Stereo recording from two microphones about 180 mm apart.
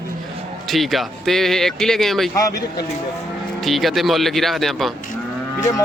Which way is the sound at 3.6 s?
Centre (ahead or behind).